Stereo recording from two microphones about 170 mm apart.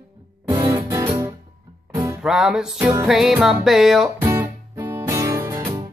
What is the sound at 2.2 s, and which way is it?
Music, 5° right (ahead or behind).